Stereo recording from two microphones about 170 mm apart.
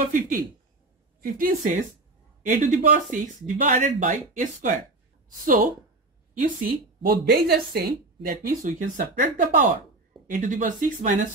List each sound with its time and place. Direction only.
0.0 s speech: 50° right (ahead or behind)
6.4 s a woman's voice: 55° right (ahead or behind)